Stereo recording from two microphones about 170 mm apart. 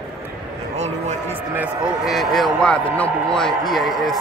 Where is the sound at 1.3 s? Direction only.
10° right (ahead or behind).